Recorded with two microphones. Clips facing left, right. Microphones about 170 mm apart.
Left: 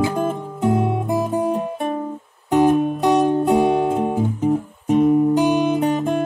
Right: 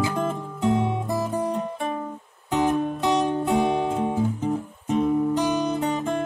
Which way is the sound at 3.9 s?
15° left (ahead or behind).